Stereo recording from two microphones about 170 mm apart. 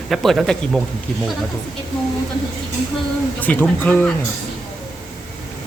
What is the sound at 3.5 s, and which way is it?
Speech, 10° left (ahead or behind).